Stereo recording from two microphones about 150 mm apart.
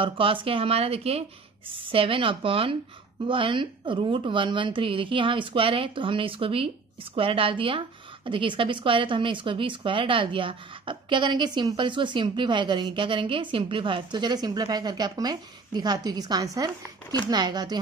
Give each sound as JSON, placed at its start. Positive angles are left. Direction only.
{"t": 0.0, "sound": "a woman's voice", "side_deg": -35}